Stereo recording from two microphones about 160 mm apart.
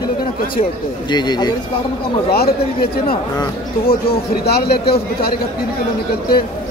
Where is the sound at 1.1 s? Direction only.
25° left (ahead or behind).